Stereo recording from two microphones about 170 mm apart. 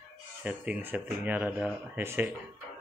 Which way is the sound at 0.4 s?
10° right (ahead or behind).